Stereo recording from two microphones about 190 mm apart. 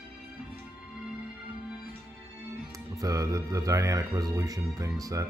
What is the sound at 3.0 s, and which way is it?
Speech, 15° right (ahead or behind).